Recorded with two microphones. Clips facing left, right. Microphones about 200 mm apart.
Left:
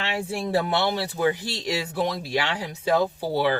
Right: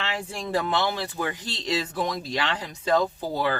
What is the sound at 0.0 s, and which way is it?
Speech, 10° left (ahead or behind).